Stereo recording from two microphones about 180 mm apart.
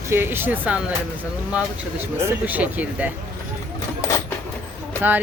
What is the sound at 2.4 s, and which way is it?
Speech, 10° right (ahead or behind).